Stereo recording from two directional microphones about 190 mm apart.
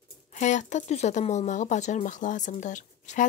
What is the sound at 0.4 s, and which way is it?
Speech, 40° left (ahead or behind).